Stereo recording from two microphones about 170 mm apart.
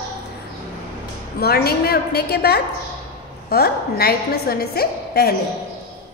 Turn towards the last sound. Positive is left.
turn(degrees=65)  # may be behind; listen again after turning